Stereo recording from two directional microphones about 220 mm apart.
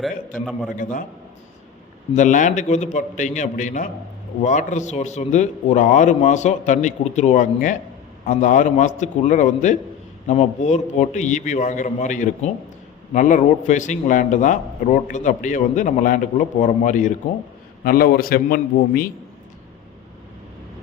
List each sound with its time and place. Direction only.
0.8 s a man's voice: 35° left (ahead or behind)
2.1 s a man's voice: 35° left (ahead or behind)